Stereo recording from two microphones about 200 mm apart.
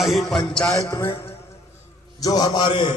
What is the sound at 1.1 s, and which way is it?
A man's voice, 30° left (ahead or behind).